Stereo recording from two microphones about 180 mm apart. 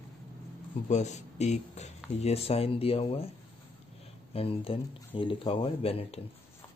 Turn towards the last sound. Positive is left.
turn(degrees=35)  # may be behind; listen again after turning